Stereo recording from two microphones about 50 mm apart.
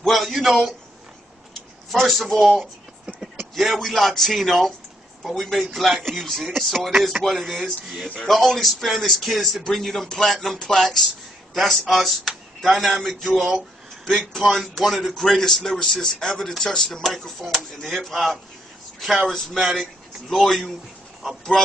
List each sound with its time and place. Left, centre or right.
0.0 s a man's voice: centre
2.0 s a man's voice: centre